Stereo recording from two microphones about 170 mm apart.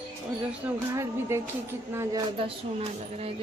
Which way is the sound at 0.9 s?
15° right (ahead or behind).